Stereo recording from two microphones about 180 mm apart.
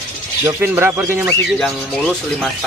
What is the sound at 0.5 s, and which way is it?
Speech, 15° right (ahead or behind).